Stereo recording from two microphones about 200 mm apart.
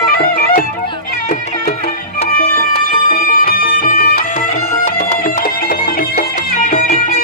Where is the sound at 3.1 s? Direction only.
45° left (ahead or behind).